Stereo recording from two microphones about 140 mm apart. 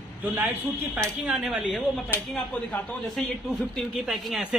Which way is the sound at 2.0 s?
15° left (ahead or behind).